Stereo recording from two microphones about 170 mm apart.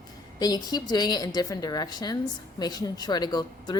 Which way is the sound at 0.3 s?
20° left (ahead or behind).